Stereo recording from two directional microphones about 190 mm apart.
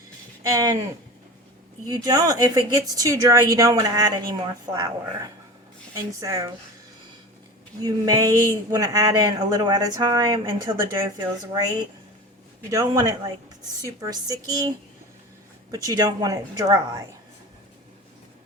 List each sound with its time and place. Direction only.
0.4 s speech: 20° right (ahead or behind)
1.9 s speech: 20° right (ahead or behind)
7.8 s speech: 20° right (ahead or behind)
12.7 s speech: 20° right (ahead or behind)
15.7 s speech: 20° right (ahead or behind)